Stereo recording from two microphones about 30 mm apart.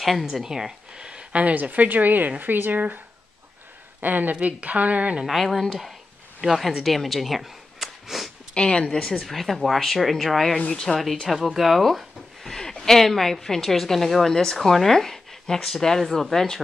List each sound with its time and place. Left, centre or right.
0.0 s speech: centre
0.9 s a sound: right
1.4 s a woman's voice: right
4.0 s a woman's voice: right
4.4 s a woman's voice: right
5.2 s speech: centre
6.8 s a sound: centre
8.5 s speech: left
9.2 s speech: centre
10.7 s a woman's voice: centre
11.5 s speech: centre
12.5 s a sound: centre
13.0 s speech: centre